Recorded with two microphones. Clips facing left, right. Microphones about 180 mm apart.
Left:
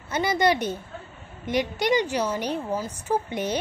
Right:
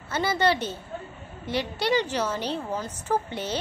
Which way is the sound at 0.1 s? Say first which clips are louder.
Left 2 dB; 15° left (ahead or behind).